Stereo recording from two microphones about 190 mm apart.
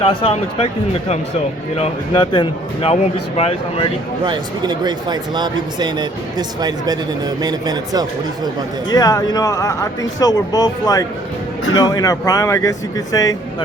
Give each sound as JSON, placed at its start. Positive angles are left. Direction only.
{"t": 0.0, "sound": "speech", "side_deg": 30}
{"t": 4.2, "sound": "speech", "side_deg": -25}
{"t": 8.9, "sound": "speech", "side_deg": 20}